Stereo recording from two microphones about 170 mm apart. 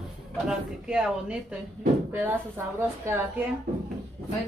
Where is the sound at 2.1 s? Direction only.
15° right (ahead or behind).